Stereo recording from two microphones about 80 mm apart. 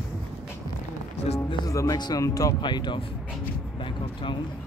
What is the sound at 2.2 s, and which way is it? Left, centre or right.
Speech, left.